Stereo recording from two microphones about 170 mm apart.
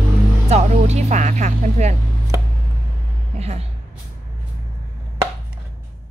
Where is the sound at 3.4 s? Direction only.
40° right (ahead or behind).